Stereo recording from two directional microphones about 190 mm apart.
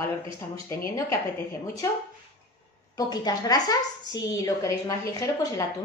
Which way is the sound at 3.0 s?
20° left (ahead or behind).